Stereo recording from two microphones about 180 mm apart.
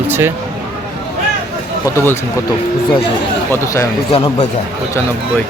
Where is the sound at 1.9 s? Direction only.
15° left (ahead or behind).